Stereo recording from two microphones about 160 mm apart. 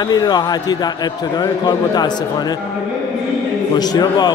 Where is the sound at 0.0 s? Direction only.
25° left (ahead or behind).